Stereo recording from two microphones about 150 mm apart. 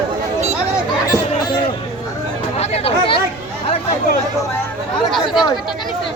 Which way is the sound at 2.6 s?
45° left (ahead or behind).